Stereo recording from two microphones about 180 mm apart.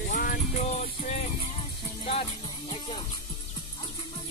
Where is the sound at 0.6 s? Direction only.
40° left (ahead or behind).